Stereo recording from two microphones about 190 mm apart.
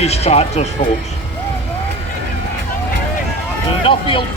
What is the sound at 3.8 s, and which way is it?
Speech, 25° left (ahead or behind).